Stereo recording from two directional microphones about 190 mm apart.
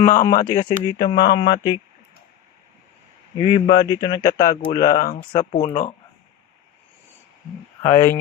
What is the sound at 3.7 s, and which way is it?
Speech, 25° left (ahead or behind).